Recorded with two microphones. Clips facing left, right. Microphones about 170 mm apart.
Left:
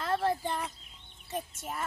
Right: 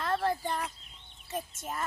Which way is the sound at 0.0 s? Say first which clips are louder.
Even; centre (ahead or behind).